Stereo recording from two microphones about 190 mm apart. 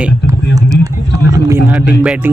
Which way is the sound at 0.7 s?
20° right (ahead or behind).